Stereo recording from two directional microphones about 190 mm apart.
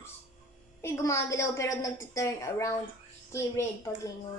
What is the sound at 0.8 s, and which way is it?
A woman's voice, 15° left (ahead or behind).